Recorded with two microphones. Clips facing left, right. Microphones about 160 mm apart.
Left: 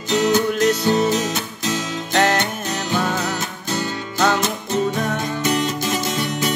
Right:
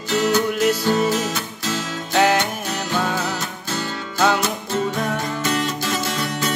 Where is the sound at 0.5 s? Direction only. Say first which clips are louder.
Left 1 dB; 10° right (ahead or behind).